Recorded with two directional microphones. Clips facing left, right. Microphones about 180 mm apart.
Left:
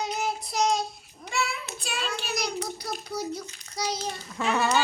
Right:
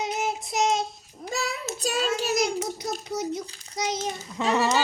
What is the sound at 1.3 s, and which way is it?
Child singing, 40° right (ahead or behind).